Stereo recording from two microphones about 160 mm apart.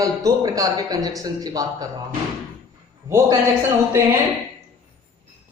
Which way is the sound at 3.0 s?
20° right (ahead or behind).